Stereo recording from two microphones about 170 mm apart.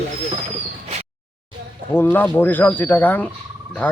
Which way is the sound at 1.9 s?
10° left (ahead or behind).